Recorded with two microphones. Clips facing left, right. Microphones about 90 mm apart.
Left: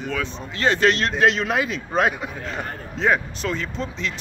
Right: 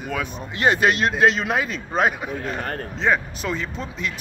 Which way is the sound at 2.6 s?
60° right (ahead or behind).